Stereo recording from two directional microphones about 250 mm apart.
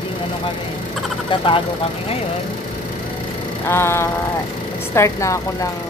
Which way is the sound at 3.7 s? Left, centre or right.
Centre.